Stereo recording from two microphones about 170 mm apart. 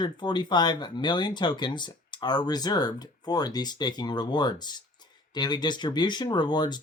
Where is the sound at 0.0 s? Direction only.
25° left (ahead or behind).